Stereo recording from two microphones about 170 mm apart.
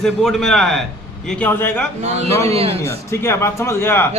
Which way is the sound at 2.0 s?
40° right (ahead or behind).